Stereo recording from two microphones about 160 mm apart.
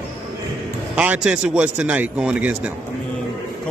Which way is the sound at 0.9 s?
5° right (ahead or behind).